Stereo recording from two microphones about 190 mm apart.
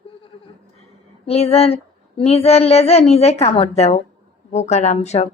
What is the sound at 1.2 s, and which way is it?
Child singing, 30° left (ahead or behind).